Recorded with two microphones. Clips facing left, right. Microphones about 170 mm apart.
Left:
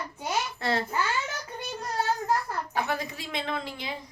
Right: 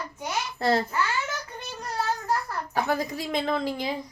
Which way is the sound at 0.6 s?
35° right (ahead or behind).